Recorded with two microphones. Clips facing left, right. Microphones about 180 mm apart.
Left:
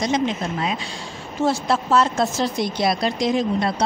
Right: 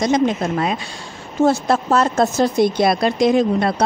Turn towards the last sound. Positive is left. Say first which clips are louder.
# right 5 dB
turn(degrees=-55)  # may be behind; listen again after turning